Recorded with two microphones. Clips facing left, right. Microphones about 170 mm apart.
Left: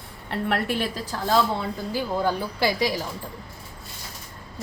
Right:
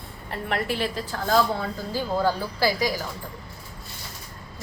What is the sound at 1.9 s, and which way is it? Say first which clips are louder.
A woman's voice: right 1 dB; 20° left (ahead or behind).